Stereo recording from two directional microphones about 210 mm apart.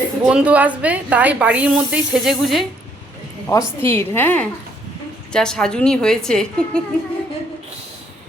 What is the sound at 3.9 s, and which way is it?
A woman's voice, 10° left (ahead or behind).